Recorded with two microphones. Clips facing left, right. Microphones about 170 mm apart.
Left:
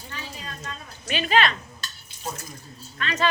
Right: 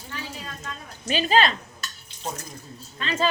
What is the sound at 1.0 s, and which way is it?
Speech, 35° right (ahead or behind).